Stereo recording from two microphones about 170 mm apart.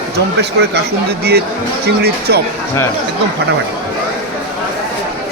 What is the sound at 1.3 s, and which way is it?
Speech, 65° right (ahead or behind).